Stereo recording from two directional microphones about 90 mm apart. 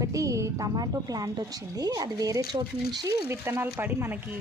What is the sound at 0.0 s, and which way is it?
A woman's voice, 40° right (ahead or behind).